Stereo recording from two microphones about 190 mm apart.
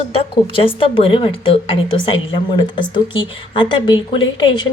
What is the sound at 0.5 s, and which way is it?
Speech, 30° left (ahead or behind).